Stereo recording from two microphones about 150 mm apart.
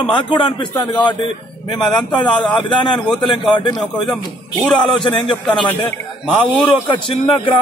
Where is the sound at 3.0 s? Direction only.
Centre (ahead or behind).